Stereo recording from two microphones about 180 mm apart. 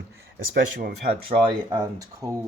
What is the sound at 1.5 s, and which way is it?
Speech, 20° right (ahead or behind).